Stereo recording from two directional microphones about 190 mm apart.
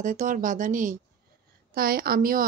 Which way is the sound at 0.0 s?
40° right (ahead or behind).